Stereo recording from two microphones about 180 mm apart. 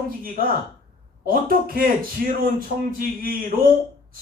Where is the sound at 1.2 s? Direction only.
55° right (ahead or behind).